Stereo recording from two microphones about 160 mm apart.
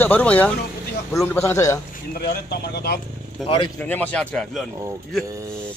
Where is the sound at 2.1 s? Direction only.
80° left.